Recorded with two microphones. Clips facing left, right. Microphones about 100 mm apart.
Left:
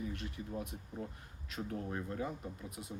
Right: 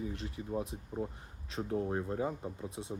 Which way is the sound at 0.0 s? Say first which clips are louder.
Right 2 dB; 30° right (ahead or behind).